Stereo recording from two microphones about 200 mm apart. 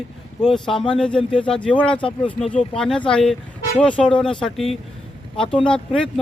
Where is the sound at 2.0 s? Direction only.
25° left (ahead or behind).